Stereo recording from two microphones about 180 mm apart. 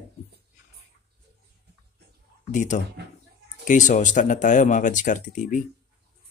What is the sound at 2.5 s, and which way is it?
Speech, 45° left (ahead or behind).